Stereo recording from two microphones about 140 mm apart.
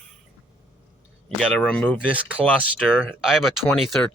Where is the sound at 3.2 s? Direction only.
5° right (ahead or behind).